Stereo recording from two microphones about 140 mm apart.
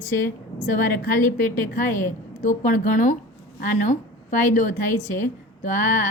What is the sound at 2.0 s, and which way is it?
A woman's voice, 65° left (ahead or behind).